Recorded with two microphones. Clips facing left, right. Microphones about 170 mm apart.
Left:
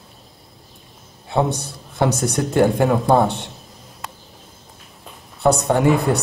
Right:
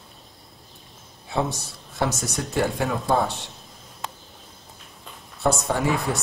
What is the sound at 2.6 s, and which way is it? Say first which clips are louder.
Speech: left 8 dB; 55° left (ahead or behind).